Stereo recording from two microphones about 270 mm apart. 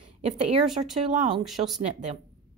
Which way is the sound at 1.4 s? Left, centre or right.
Centre.